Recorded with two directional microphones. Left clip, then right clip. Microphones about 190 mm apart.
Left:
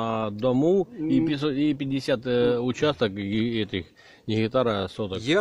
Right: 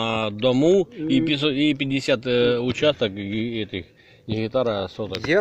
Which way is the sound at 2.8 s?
15° left (ahead or behind).